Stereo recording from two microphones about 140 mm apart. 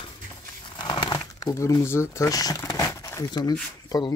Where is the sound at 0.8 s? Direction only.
30° left (ahead or behind).